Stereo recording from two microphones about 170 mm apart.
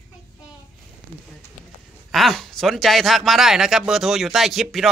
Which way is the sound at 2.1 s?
Centre (ahead or behind).